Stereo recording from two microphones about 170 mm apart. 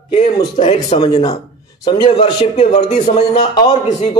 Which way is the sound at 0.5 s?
35° left (ahead or behind).